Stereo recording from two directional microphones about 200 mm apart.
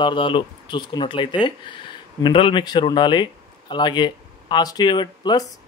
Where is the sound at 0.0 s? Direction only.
25° left (ahead or behind).